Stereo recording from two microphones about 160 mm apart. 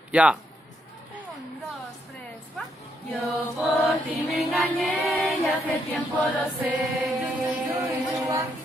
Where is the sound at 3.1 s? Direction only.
10° left (ahead or behind).